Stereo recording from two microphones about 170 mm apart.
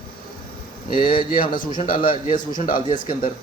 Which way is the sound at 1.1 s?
55° left (ahead or behind).